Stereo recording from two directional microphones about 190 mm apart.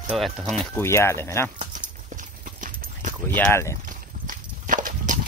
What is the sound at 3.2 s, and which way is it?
Speech, 10° left (ahead or behind).